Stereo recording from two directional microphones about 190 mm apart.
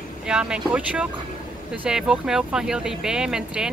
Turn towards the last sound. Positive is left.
turn(degrees=-5)  # may be behind; listen again after turning